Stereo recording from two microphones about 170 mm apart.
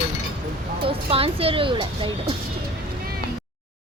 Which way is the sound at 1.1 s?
35° right (ahead or behind).